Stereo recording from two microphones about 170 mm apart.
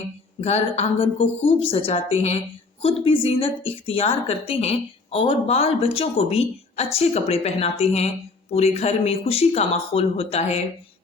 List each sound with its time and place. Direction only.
0.4 s a woman's voice: 40° left (ahead or behind)